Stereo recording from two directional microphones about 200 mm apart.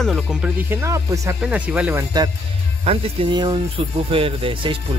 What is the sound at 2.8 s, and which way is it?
Speech, 30° right (ahead or behind).